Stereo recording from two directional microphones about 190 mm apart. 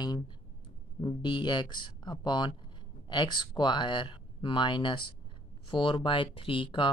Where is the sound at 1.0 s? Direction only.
25° left (ahead or behind).